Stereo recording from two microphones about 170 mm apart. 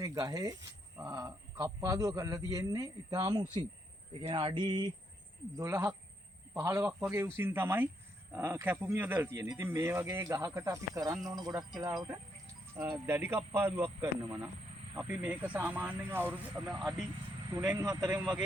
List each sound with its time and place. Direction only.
0.0 s speech: 20° right (ahead or behind)
5.5 s a man's voice: 15° right (ahead or behind)
17.5 s speech: 20° right (ahead or behind)